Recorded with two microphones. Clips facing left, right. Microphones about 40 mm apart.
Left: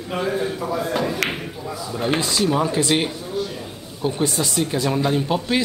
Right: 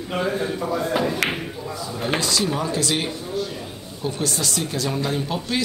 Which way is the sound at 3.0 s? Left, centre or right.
Centre.